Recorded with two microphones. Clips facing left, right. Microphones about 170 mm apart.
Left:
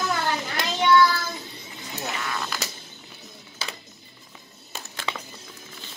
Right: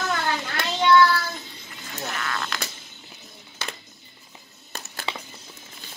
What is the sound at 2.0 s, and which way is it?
Frog, 15° left (ahead or behind).